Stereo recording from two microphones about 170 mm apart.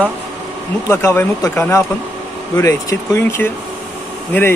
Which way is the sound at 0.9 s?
15° left (ahead or behind).